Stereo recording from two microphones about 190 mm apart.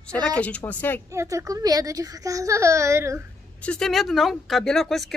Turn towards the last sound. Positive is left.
turn(degrees=0)  # may be behind; listen again after turning